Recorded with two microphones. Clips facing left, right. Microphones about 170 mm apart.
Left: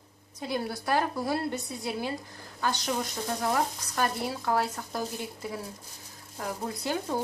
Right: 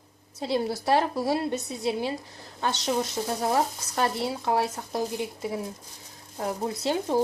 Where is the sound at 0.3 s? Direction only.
25° right (ahead or behind).